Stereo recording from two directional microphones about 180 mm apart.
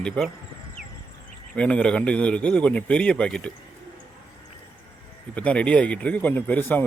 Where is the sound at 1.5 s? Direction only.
5° left (ahead or behind).